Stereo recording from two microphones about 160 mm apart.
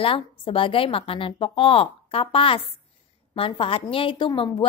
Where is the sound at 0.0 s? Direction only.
35° left (ahead or behind).